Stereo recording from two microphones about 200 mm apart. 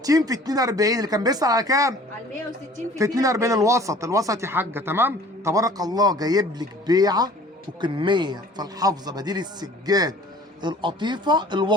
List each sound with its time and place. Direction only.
0.0 s speech: 15° right (ahead or behind)